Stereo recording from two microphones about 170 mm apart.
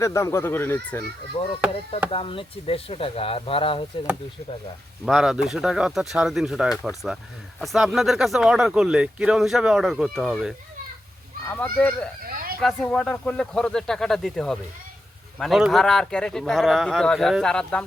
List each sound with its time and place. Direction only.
0.0 s speech: 15° left (ahead or behind)
1.4 s speech: 35° left (ahead or behind)
5.0 s speech: centre (ahead or behind)
11.6 s speech: 10° left (ahead or behind)
12.2 s a sound: 60° right (ahead or behind)
12.5 s speech: 5° left (ahead or behind)